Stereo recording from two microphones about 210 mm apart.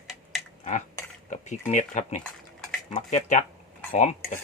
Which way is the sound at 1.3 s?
35° left (ahead or behind).